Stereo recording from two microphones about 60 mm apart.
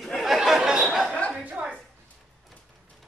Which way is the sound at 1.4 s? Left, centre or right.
Right.